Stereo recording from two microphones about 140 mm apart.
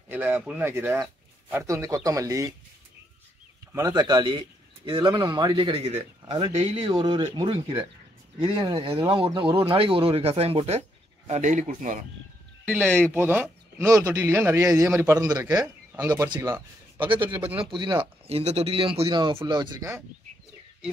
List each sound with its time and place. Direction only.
0.1 s speech: 15° right (ahead or behind)
0.9 s a sound: 5° right (ahead or behind)
1.7 s speech: 25° right (ahead or behind)
3.7 s speech: 25° right (ahead or behind); by 12.0 s 65° right (ahead or behind)
12.8 s speech: 10° left (ahead or behind)
13.1 s speech: 15° right (ahead or behind)
15.1 s speech: 25° right (ahead or behind)
15.6 s speech: 10° right (ahead or behind)
16.1 s speech: 25° right (ahead or behind)
16.3 s speech: 15° right (ahead or behind)
17.1 s speech: 35° right (ahead or behind)
18.2 s speech: 50° right (ahead or behind); by 20.0 s 25° right (ahead or behind)